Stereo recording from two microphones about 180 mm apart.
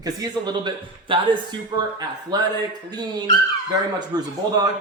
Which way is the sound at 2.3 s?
25° right (ahead or behind).